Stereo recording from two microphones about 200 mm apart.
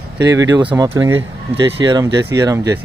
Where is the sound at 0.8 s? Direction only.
15° right (ahead or behind).